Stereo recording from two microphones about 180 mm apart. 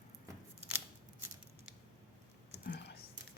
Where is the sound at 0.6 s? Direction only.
10° right (ahead or behind).